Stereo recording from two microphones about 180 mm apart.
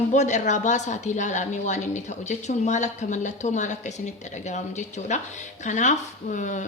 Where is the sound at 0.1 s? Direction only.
40° left (ahead or behind).